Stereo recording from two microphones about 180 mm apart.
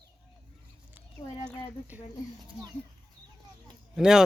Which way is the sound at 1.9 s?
10° right (ahead or behind).